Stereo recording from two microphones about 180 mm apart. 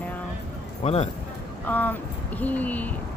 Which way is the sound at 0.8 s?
35° left (ahead or behind).